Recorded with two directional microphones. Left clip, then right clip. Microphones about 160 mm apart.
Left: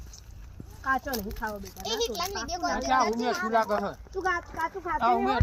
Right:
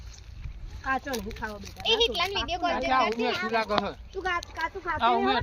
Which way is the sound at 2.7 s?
75° left (ahead or behind).